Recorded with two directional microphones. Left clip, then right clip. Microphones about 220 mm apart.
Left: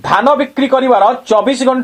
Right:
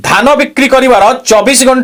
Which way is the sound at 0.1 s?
40° right (ahead or behind).